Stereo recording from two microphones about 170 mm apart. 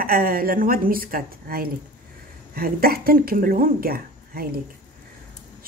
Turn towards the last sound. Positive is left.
turn(degrees=-60)  # may be behind; listen again after turning